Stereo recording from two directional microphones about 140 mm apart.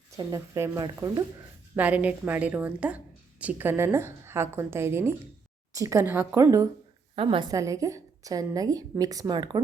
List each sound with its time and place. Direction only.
0.2 s a woman's voice: 25° right (ahead or behind)
1.7 s a woman's voice: 10° right (ahead or behind)
7.2 s a woman's voice: 35° right (ahead or behind)
7.5 s a woman's voice: 25° right (ahead or behind)